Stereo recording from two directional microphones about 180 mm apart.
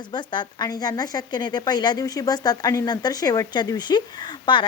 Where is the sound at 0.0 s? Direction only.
25° left (ahead or behind).